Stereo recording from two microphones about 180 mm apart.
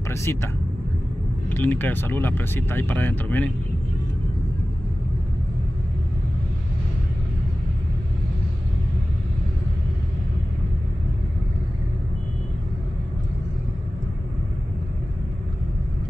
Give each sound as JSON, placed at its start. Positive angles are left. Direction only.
{"t": 0.1, "sound": "speech", "side_deg": 15}
{"t": 1.5, "sound": "speech", "side_deg": 10}